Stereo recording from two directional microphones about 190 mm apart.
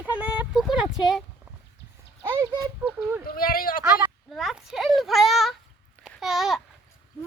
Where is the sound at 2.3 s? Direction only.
20° right (ahead or behind).